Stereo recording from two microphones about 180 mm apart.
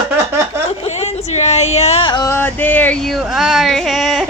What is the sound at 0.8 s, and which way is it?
A woman's voice, 35° left (ahead or behind).